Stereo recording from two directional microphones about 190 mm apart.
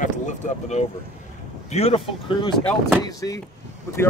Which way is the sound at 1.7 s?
30° left (ahead or behind).